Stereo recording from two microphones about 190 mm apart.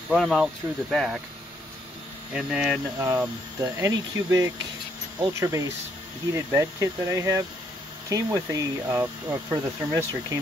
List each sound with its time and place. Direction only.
0.1 s speech: centre (ahead or behind)
2.3 s speech: 5° right (ahead or behind)
3.7 s speech: 15° right (ahead or behind)